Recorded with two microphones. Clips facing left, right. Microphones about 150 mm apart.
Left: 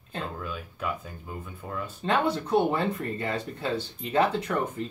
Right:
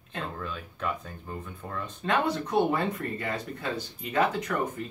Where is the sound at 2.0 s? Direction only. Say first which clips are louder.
Left 1 dB; 30° left (ahead or behind).